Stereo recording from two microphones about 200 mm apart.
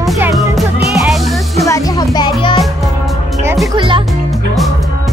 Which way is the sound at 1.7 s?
20° left (ahead or behind).